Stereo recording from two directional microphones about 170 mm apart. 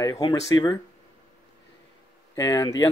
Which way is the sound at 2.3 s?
20° left (ahead or behind).